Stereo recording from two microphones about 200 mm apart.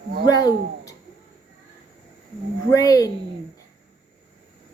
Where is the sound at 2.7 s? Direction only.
15° left (ahead or behind).